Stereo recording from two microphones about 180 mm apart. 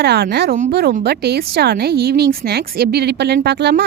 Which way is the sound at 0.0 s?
65° right (ahead or behind).